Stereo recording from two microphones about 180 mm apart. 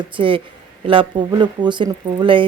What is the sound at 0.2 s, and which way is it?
Speech, 30° right (ahead or behind).